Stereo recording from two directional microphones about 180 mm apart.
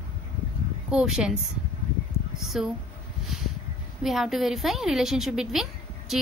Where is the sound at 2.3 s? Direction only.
Centre (ahead or behind).